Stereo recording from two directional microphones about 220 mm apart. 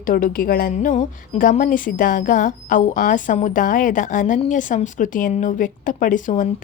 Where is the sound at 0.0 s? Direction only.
40° left (ahead or behind).